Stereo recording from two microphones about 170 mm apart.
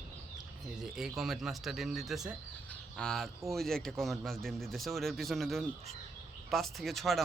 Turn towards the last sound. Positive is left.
turn(degrees=0)  # may be behind; listen again after turning